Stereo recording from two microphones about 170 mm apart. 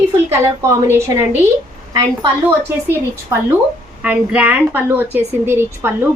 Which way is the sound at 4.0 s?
5° right (ahead or behind).